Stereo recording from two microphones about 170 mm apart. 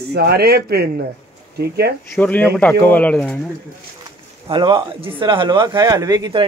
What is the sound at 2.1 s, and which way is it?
Speech, 10° left (ahead or behind).